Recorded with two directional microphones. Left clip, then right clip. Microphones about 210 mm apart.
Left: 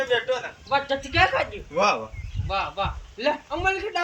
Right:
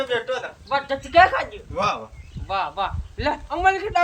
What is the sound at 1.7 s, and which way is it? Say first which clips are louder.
Speech: left 2 dB; 10° left (ahead or behind).